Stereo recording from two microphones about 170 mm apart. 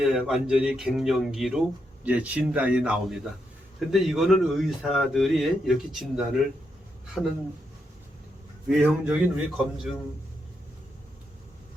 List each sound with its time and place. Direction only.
0.0 s a man's voice: 5° right (ahead or behind)
8.6 s a man's voice: 5° right (ahead or behind)